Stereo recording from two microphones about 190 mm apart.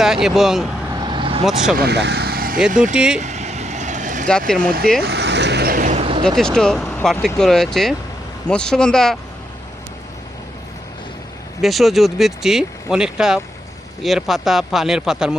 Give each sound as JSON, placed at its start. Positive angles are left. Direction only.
{"t": 0.0, "sound": "speech", "side_deg": 0}
{"t": 0.9, "sound": "vehicle", "side_deg": -25}
{"t": 1.7, "sound": "vehicle", "side_deg": -60}
{"t": 2.9, "sound": "speech", "side_deg": -5}
{"t": 3.2, "sound": "vehicle", "side_deg": -40}
{"t": 4.3, "sound": "speech", "side_deg": 5}
{"t": 5.0, "sound": "vehicle", "side_deg": -65}
{"t": 6.2, "sound": "speech", "side_deg": 5}
{"t": 11.6, "sound": "speech", "side_deg": 0}